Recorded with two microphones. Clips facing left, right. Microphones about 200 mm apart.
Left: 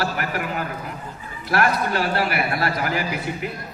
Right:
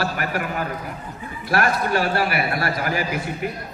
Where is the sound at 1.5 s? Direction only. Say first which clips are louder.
Even; 50° right (ahead or behind).